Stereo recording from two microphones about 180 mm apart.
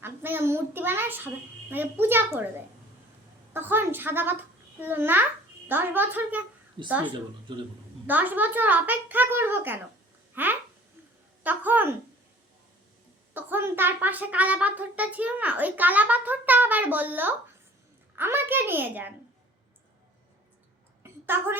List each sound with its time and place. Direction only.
0.0 s a child's voice: 10° right (ahead or behind)
3.5 s a child's voice: 10° right (ahead or behind)
7.5 s a man's voice: 25° right (ahead or behind)
8.0 s a woman's voice: 10° right (ahead or behind)
13.3 s a woman's voice: 10° right (ahead or behind)
21.0 s a sound: 10° right (ahead or behind)